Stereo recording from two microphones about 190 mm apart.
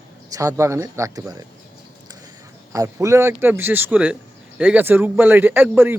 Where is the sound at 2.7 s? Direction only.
15° right (ahead or behind).